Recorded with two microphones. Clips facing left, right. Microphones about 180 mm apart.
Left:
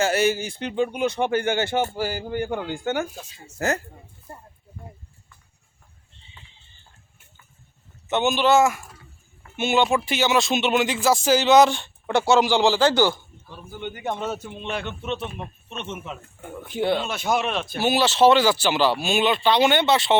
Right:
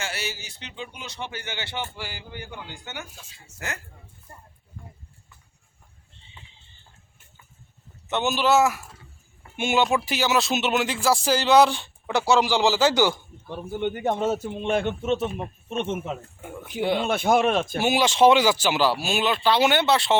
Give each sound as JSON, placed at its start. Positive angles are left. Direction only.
{"t": 0.0, "sound": "speech", "side_deg": 50}
{"t": 8.0, "sound": "speech", "side_deg": 0}
{"t": 13.7, "sound": "a man's voice", "side_deg": -60}
{"t": 14.0, "sound": "a man's voice", "side_deg": -40}
{"t": 14.7, "sound": "speech", "side_deg": -50}
{"t": 16.4, "sound": "speech", "side_deg": -5}
{"t": 17.1, "sound": "speech", "side_deg": -55}
{"t": 17.7, "sound": "speech", "side_deg": -10}